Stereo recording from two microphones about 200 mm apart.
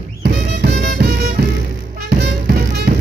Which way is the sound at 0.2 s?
50° right (ahead or behind).